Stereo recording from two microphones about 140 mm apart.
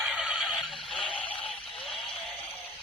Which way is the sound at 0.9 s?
40° left (ahead or behind).